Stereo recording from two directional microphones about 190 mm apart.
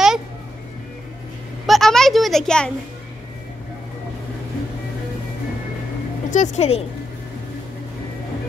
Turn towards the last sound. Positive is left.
turn(degrees=35)  # may be behind; listen again after turning